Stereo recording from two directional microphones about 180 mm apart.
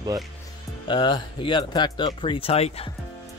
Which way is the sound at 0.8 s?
25° left (ahead or behind).